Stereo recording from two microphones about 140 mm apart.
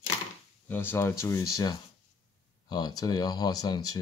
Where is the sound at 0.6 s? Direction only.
15° left (ahead or behind).